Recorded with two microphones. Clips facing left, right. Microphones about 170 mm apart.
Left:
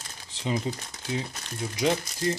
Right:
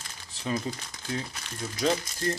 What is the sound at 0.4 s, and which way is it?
Speech, 20° left (ahead or behind).